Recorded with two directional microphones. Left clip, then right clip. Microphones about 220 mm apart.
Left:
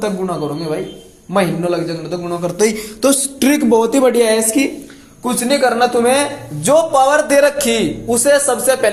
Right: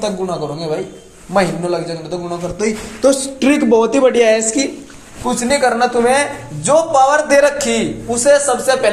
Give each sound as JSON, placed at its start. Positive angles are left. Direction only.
{"t": 0.0, "sound": "a man's voice", "side_deg": 30}
{"t": 2.6, "sound": "a man's voice", "side_deg": 40}